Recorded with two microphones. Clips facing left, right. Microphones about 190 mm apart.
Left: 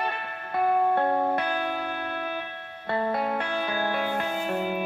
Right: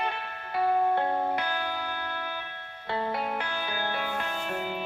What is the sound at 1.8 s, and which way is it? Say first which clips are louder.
Music: left 3 dB; 25° left (ahead or behind).